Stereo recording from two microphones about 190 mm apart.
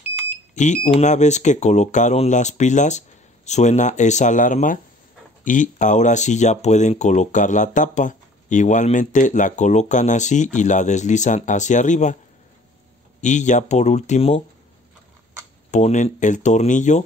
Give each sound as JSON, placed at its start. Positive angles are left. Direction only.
{"t": 0.8, "sound": "speech", "side_deg": 40}
{"t": 13.2, "sound": "speech", "side_deg": 40}
{"t": 15.7, "sound": "speech", "side_deg": 40}